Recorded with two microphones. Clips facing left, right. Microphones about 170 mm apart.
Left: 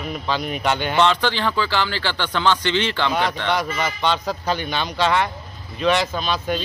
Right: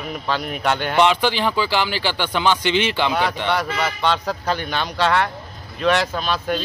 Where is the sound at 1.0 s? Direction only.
15° right (ahead or behind).